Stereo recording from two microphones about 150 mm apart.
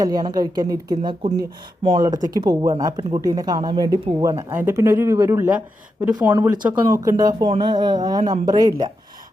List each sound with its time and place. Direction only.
0.0 s speech: 25° right (ahead or behind)